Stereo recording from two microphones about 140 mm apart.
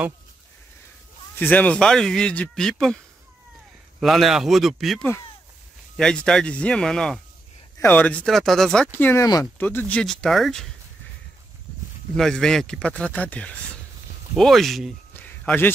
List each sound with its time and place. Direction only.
1.4 s speech: 10° left (ahead or behind)
4.0 s speech: centre (ahead or behind)
9.2 s speech: 25° left (ahead or behind)
9.6 s speech: 10° left (ahead or behind)
12.2 s speech: 5° left (ahead or behind)
15.1 s a sound: 15° left (ahead or behind)